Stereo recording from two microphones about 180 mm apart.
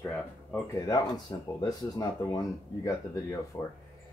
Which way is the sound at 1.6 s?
20° left (ahead or behind).